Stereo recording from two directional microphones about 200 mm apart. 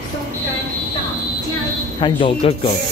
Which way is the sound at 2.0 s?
25° left (ahead or behind).